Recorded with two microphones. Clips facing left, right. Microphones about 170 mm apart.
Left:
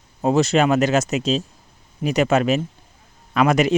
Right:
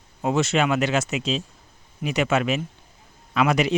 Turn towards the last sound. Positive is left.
turn(degrees=45)  # may be behind; listen again after turning